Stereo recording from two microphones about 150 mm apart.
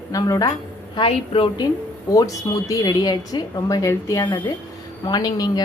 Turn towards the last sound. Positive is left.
turn(degrees=25)  # may be behind; listen again after turning